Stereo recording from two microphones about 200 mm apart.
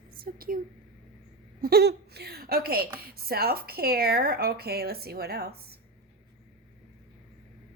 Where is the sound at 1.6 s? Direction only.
50° right (ahead or behind).